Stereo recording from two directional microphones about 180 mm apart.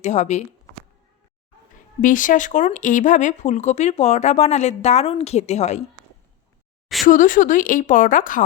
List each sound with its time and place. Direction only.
0.0 s speech: 40° left (ahead or behind)
1.7 s speech: 45° left (ahead or behind)
7.0 s a woman's voice: 45° left (ahead or behind)